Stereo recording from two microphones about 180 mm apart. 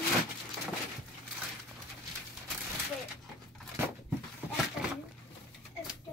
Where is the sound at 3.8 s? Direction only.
5° right (ahead or behind).